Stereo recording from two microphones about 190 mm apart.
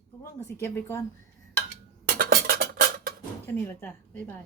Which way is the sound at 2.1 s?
50° right (ahead or behind).